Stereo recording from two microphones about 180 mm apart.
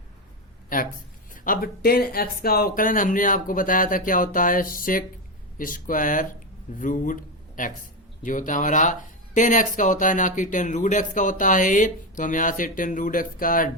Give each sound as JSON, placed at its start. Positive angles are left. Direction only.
{"t": 0.7, "sound": "a man's voice", "side_deg": 50}